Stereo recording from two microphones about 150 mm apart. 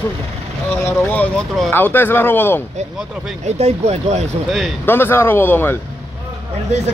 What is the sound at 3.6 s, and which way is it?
Speech, 45° right (ahead or behind).